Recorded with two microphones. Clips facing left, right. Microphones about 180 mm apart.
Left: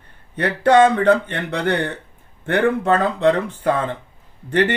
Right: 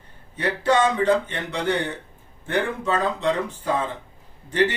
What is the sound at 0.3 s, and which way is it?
Speech, 60° left (ahead or behind).